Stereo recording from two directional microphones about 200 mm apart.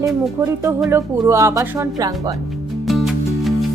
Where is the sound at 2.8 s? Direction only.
Centre (ahead or behind).